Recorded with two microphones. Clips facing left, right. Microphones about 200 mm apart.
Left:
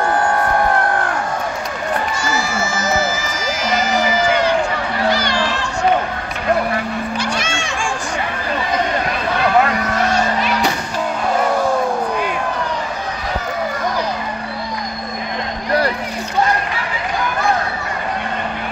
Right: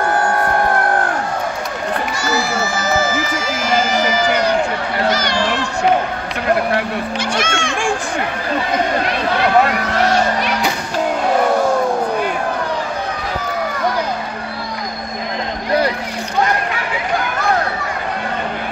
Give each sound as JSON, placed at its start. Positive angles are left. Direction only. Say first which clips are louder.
{"t": 4.3, "sound": "run", "louder": "left 1 dB", "side_deg": -40}
{"t": 7.3, "sound": "music", "louder": "right 3 dB", "side_deg": -50}